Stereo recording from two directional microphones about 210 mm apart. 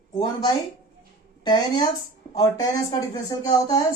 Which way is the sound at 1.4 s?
20° left (ahead or behind).